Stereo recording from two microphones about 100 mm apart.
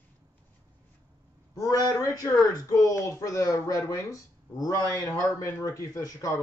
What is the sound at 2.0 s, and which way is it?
Speech, 35° left (ahead or behind).